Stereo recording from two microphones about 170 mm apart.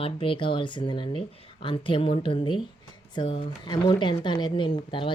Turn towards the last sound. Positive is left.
turn(degrees=30)  # may be behind; listen again after turning